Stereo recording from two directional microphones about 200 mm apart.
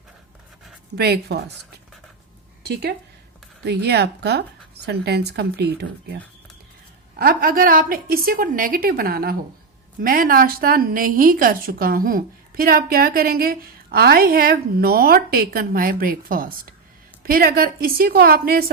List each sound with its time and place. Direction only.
0.9 s a woman's voice: 55° right (ahead or behind)
3.7 s speech: 55° right (ahead or behind)
7.2 s a woman's voice: 45° right (ahead or behind)